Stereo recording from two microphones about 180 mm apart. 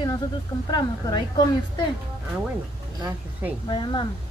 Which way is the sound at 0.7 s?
25° left (ahead or behind).